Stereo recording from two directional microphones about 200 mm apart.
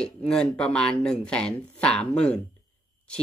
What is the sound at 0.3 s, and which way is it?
Speech, 5° left (ahead or behind).